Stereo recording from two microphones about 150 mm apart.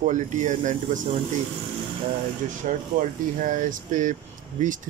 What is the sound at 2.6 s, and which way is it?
Speech, 55° right (ahead or behind).